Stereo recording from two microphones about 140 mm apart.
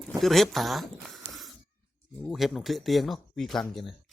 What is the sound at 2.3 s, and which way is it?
Speech, centre (ahead or behind).